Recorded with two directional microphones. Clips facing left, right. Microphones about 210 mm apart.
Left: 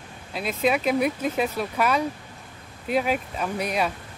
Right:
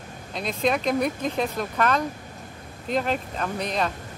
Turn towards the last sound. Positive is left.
turn(degrees=10)  # may be behind; listen again after turning